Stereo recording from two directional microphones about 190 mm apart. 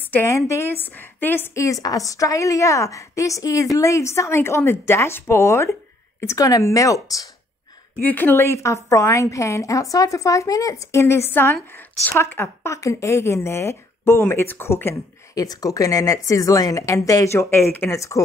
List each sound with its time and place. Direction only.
0.1 s speech: 15° left (ahead or behind)